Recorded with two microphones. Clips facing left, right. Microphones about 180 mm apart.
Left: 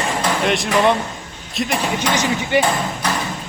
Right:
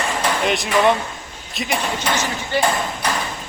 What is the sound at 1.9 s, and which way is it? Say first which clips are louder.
Speech: left 3 dB; 15° left (ahead or behind).